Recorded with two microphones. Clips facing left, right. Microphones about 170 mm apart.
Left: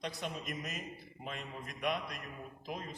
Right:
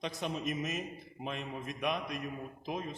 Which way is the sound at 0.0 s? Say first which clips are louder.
Right 5 dB; 20° right (ahead or behind).